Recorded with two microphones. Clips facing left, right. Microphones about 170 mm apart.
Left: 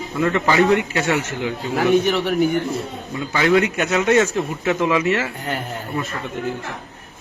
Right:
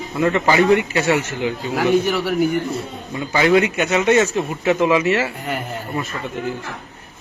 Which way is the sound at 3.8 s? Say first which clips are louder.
Right 1 dB; centre (ahead or behind).